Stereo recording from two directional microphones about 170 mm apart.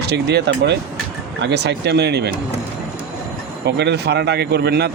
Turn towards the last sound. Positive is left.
turn(degrees=-75)  # may be behind; listen again after turning